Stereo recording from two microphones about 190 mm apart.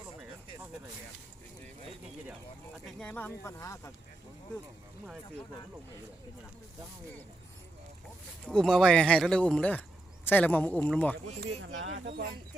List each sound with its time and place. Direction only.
3.0 s speech: 10° left (ahead or behind)
8.4 s speech: 5° left (ahead or behind)
11.6 s speech: 80° right